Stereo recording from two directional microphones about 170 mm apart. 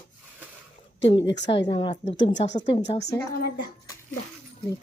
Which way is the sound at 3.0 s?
75° left (ahead or behind).